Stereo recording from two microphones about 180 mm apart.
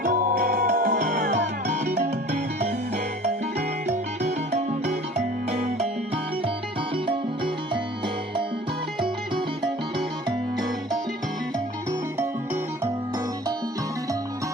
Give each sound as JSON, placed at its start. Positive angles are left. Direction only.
{"t": 0.0, "sound": "music", "side_deg": -50}
{"t": 5.1, "sound": "music", "side_deg": -40}
{"t": 6.9, "sound": "music", "side_deg": -25}